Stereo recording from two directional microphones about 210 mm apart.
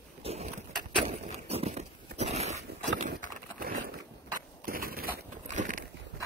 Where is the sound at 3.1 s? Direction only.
45° right (ahead or behind).